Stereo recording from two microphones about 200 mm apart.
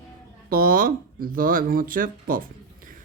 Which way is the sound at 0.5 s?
45° right (ahead or behind).